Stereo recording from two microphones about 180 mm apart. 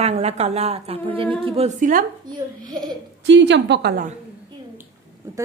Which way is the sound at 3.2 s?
80° right.